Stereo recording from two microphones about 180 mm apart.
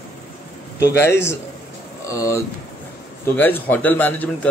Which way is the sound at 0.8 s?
15° left (ahead or behind).